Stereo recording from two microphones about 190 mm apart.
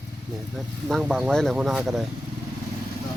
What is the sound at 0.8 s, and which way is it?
Speech, centre (ahead or behind).